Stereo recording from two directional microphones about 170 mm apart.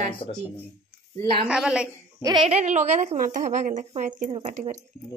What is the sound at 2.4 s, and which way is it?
A woman's voice, 45° right (ahead or behind).